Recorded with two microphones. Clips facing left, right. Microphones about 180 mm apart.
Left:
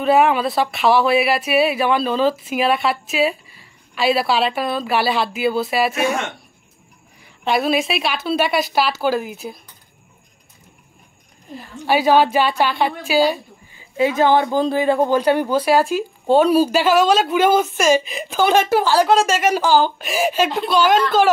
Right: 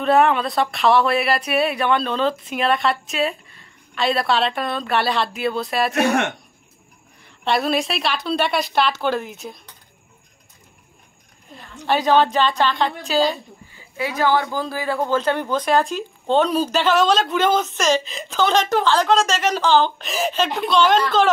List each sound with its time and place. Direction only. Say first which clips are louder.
0.0 s speech: left 1 dB; 5° left (ahead or behind)
5.9 s speech: right 2 dB; 65° right (ahead or behind)
7.2 s speech: left 2 dB; centre (ahead or behind)
11.8 s speech: left 2 dB; 10° left (ahead or behind)
13.9 s speech: left 5 dB; 20° left (ahead or behind); by 21.0 s 5° left (ahead or behind)